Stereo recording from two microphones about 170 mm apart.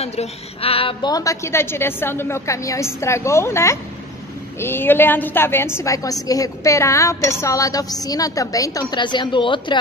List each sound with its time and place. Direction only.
0.0 s a woman's voice: 40° left (ahead or behind)